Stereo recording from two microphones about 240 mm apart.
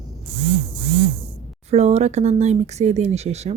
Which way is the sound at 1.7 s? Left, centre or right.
Right.